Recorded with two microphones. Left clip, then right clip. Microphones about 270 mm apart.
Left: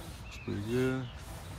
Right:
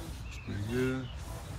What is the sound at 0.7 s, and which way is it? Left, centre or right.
Speech, centre.